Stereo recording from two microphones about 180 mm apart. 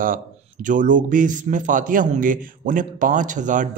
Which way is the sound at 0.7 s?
45° right (ahead or behind).